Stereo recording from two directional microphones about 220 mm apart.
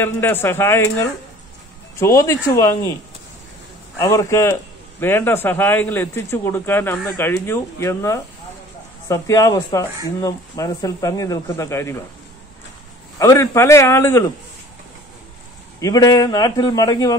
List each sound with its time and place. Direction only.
0.0 s a man's voice: 10° left (ahead or behind)
4.0 s a man's voice: 15° left (ahead or behind)
13.2 s a man's voice: 15° left (ahead or behind)
15.8 s a man's voice: 15° left (ahead or behind)